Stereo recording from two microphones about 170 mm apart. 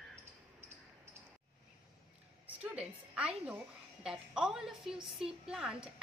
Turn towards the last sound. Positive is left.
turn(degrees=-5)  # may be behind; listen again after turning